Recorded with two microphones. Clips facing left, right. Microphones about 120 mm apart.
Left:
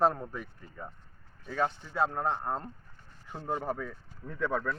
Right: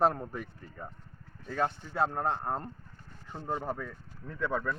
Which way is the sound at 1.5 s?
15° left (ahead or behind).